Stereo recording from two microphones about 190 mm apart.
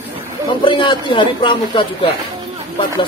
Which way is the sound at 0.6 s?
25° left (ahead or behind).